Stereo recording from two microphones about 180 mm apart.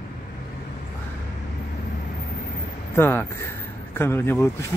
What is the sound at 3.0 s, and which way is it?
Speech, 10° left (ahead or behind).